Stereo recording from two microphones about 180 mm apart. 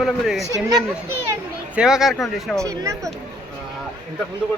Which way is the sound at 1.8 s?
Centre (ahead or behind).